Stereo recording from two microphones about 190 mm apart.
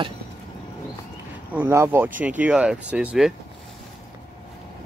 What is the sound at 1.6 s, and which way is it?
Speech, 10° right (ahead or behind).